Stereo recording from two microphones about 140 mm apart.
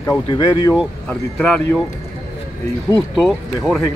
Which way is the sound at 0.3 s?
20° left (ahead or behind).